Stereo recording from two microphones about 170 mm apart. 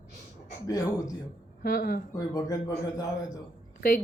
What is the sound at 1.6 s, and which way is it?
Speech, 60° left (ahead or behind).